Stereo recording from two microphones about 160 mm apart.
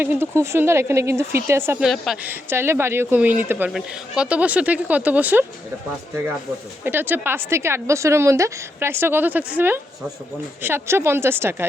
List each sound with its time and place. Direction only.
0.0 s a woman's voice: 15° right (ahead or behind)
1.8 s speech: 5° right (ahead or behind)
2.3 s a woman's voice: 15° right (ahead or behind)
6.8 s a woman's voice: 10° right (ahead or behind)